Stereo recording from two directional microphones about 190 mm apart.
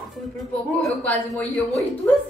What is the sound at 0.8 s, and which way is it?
Speech, 5° left (ahead or behind).